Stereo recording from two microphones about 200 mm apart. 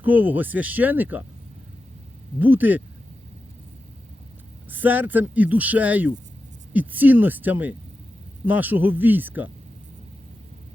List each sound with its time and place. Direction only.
0.0 s speech: 10° right (ahead or behind)
2.4 s speech: 10° right (ahead or behind)
4.7 s speech: 10° right (ahead or behind)